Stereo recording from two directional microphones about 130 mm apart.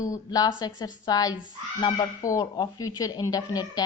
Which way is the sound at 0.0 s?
25° left (ahead or behind).